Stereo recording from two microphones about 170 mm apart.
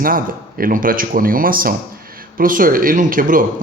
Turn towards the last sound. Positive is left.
turn(degrees=-55)  # may be behind; listen again after turning